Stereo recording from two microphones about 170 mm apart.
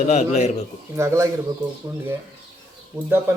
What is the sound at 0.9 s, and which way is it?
Speech, 15° right (ahead or behind).